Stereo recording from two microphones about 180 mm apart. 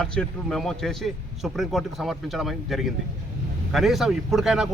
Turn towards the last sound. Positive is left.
turn(degrees=-5)  # may be behind; listen again after turning